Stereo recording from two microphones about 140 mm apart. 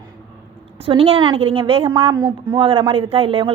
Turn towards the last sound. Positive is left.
turn(degrees=-40)  # may be behind; listen again after turning